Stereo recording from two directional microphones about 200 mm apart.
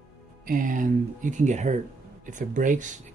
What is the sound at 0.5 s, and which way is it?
Speech, 40° right (ahead or behind).